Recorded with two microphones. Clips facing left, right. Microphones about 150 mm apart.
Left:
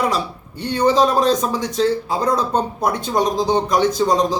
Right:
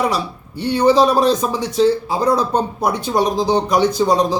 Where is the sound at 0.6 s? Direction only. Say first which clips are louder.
Right 3 dB; 5° right (ahead or behind).